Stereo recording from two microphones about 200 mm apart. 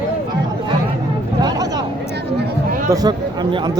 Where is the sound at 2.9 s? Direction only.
20° right (ahead or behind).